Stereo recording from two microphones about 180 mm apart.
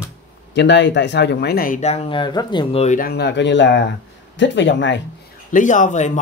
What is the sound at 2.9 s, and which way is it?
Speech, 60° left (ahead or behind).